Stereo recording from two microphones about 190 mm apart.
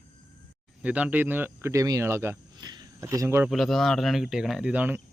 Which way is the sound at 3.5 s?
Centre (ahead or behind).